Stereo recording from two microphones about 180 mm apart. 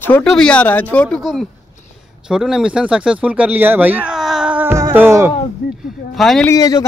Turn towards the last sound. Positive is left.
turn(degrees=15)  # may be behind; listen again after turning